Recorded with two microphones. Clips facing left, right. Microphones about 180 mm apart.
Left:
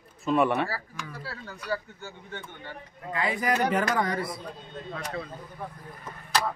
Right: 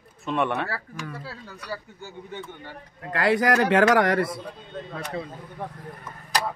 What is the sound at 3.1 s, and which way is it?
Speech, 80° right.